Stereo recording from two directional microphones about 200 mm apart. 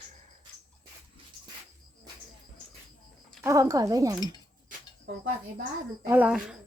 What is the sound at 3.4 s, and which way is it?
Speech, 15° right (ahead or behind).